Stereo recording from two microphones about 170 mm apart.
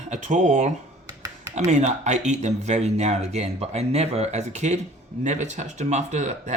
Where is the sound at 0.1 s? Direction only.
45° right (ahead or behind).